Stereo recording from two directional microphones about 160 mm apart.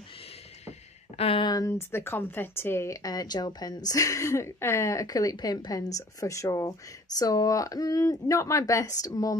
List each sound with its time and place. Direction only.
0.7 s speech: 40° left (ahead or behind); by 9.4 s 20° left (ahead or behind)